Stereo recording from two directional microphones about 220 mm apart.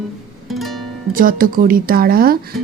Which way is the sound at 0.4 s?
Centre (ahead or behind).